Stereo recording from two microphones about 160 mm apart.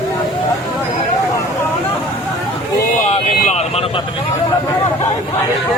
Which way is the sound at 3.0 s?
50° left (ahead or behind).